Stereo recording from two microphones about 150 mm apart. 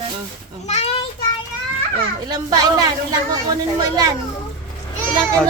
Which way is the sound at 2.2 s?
25° right (ahead or behind).